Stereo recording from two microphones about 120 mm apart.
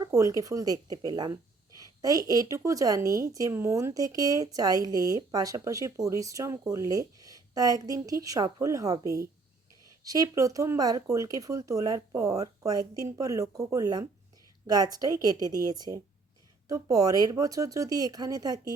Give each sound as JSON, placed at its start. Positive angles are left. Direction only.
{"t": 0.0, "sound": "a woman's voice", "side_deg": -30}